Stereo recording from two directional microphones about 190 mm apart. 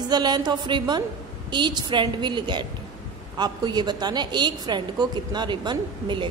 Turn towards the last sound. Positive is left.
turn(degrees=-25)  # may be behind; listen again after turning